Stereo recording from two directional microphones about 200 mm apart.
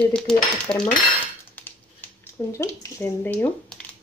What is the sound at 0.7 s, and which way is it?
Speech, 10° left (ahead or behind).